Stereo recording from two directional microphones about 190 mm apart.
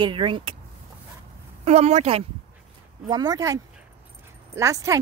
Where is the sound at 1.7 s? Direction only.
35° right (ahead or behind).